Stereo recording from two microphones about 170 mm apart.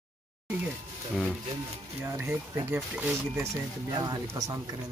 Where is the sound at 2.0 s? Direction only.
10° right (ahead or behind).